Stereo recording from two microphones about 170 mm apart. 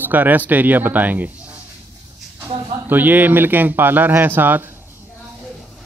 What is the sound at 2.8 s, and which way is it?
Speech, 10° right (ahead or behind).